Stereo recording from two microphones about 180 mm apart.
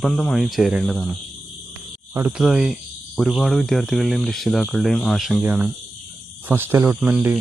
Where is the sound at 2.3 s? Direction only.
Centre (ahead or behind).